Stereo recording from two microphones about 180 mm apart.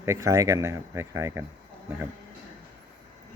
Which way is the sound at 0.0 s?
15° right (ahead or behind).